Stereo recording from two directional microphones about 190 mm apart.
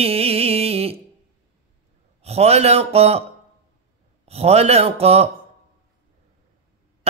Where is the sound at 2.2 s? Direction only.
35° right (ahead or behind).